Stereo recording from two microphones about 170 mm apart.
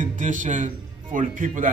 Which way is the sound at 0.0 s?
50° right (ahead or behind).